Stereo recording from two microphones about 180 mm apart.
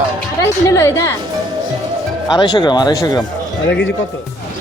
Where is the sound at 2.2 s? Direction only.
25° left (ahead or behind).